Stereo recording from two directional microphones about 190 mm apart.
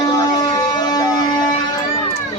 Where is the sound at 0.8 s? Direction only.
20° left (ahead or behind).